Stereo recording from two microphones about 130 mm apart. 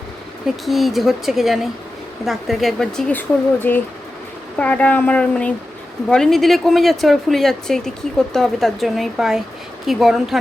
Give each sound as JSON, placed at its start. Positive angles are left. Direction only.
{"t": 0.4, "sound": "speech", "side_deg": 0}
{"t": 3.2, "sound": "speech", "side_deg": 15}